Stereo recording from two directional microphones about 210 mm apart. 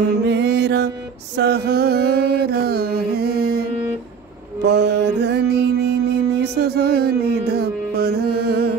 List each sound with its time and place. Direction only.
0.3 s music: 50° right (ahead or behind)
4.6 s music: 55° right (ahead or behind)